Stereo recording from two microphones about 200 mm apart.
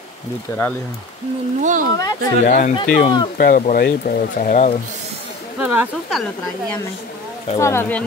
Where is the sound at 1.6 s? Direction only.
40° right (ahead or behind).